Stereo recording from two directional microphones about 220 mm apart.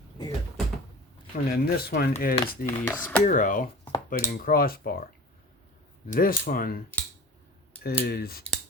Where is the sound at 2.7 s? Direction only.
10° left (ahead or behind).